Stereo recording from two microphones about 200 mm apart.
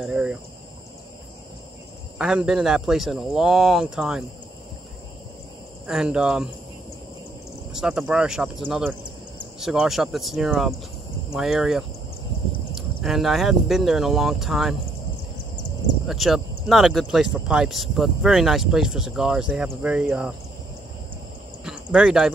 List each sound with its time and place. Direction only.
0.0 s speech: 5° right (ahead or behind)
2.1 s speech: 5° right (ahead or behind)
5.9 s speech: 5° right (ahead or behind)
7.7 s speech: 5° right (ahead or behind)
16.1 s speech: centre (ahead or behind)
21.6 s speech: 5° right (ahead or behind)